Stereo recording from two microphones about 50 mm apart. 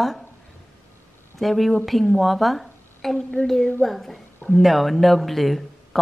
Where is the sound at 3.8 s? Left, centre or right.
Centre.